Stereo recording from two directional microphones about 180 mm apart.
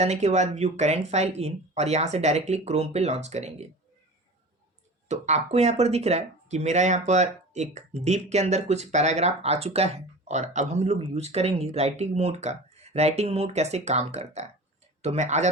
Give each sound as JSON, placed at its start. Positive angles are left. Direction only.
{"t": 0.0, "sound": "speech", "side_deg": -40}
{"t": 5.0, "sound": "speech", "side_deg": -40}